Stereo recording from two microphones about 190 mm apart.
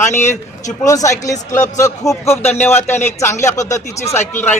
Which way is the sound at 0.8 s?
15° left (ahead or behind).